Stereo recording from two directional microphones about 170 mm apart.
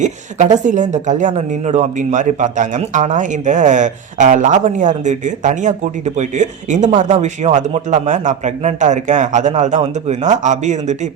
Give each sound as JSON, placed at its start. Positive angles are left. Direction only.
{"t": 0.0, "sound": "a man's voice", "side_deg": -45}